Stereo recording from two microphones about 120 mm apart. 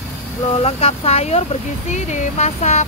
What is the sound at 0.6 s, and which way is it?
Speech, 55° left (ahead or behind).